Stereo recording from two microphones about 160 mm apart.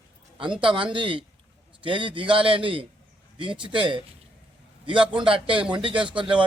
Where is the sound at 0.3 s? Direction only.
30° right (ahead or behind).